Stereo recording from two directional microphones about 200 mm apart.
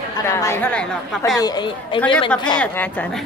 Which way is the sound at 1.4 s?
20° left (ahead or behind).